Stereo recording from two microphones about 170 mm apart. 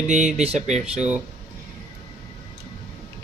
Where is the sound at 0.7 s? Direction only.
5° right (ahead or behind).